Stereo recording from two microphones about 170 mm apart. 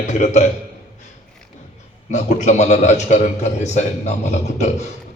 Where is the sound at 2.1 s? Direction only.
45° left (ahead or behind).